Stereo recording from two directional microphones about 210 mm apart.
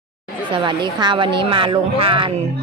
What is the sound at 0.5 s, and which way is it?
A woman's voice, 20° right (ahead or behind).